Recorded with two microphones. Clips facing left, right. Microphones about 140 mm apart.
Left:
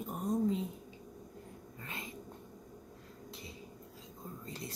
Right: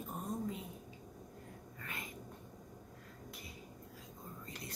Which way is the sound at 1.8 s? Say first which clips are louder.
Left 2 dB; 25° left (ahead or behind).